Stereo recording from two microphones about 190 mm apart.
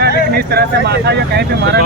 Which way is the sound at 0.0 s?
55° right (ahead or behind).